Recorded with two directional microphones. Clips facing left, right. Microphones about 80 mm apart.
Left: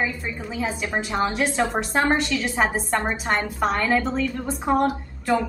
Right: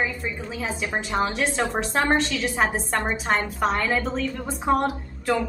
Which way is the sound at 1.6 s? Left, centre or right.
Centre.